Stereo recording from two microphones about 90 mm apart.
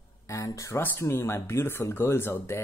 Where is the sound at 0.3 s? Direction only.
35° left (ahead or behind).